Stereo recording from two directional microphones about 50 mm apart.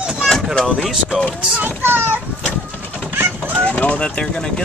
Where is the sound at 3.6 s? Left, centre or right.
Left.